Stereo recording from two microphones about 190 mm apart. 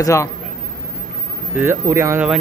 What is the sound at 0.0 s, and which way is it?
Speech, 15° left (ahead or behind).